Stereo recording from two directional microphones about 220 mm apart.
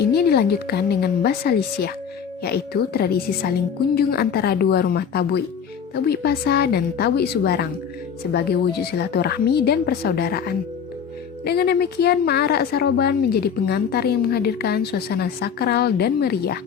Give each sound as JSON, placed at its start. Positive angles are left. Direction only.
{"t": 0.0, "sound": "a woman's voice", "side_deg": 45}